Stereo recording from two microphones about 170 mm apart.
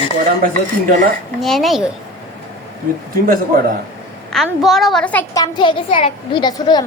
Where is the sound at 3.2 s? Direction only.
55° right (ahead or behind).